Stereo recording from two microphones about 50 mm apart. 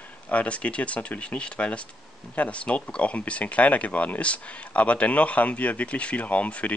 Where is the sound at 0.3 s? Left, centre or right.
Left.